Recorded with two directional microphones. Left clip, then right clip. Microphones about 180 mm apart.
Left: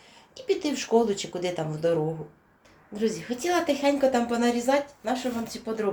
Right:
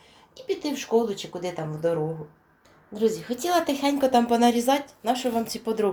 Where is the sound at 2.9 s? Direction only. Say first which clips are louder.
Right 4 dB; 25° right (ahead or behind).